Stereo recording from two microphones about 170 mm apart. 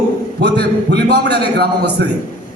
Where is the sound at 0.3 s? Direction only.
75° right (ahead or behind).